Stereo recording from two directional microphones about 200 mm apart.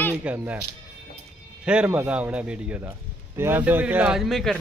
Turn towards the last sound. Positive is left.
turn(degrees=0)  # may be behind; listen again after turning